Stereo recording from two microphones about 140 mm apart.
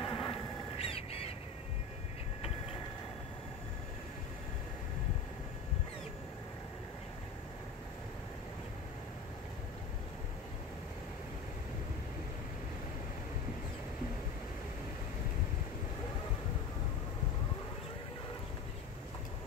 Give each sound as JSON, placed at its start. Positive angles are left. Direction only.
{"t": 0.0, "sound": "crow", "side_deg": 35}